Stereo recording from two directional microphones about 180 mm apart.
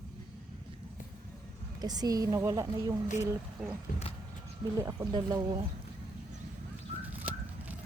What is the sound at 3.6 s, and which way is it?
Speech, centre (ahead or behind).